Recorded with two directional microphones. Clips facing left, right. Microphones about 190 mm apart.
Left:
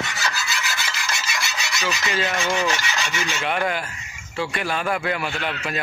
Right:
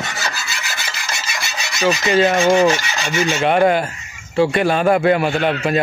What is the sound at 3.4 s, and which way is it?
Speech, 30° right (ahead or behind).